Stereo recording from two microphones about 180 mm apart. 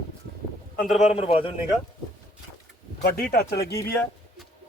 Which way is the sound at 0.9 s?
35° left (ahead or behind).